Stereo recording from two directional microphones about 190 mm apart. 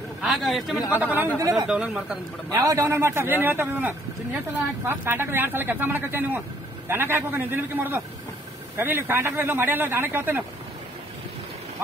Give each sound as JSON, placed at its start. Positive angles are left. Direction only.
{"t": 0.2, "sound": "a man's voice", "side_deg": 0}
{"t": 1.0, "sound": "a man's voice", "side_deg": -10}
{"t": 1.7, "sound": "a man's voice", "side_deg": -5}
{"t": 2.5, "sound": "a man's voice", "side_deg": -15}